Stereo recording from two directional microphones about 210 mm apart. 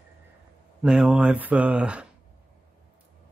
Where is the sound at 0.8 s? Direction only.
5° right (ahead or behind).